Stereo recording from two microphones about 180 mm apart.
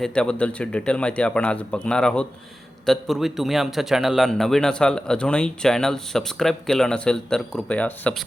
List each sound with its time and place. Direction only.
0.0 s a man's voice: 5° left (ahead or behind)